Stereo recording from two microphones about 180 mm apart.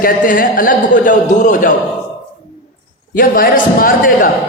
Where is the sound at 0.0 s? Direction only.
50° left (ahead or behind).